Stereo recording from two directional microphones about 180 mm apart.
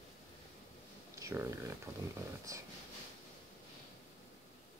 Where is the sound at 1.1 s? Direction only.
15° right (ahead or behind).